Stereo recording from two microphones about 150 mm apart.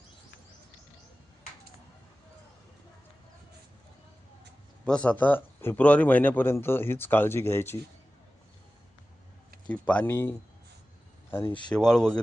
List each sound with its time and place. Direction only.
4.9 s a man's voice: 10° left (ahead or behind)
9.6 s a man's voice: 10° left (ahead or behind)
11.7 s speech: 5° left (ahead or behind)